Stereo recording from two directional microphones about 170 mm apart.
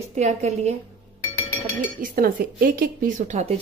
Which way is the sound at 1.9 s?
55° right (ahead or behind).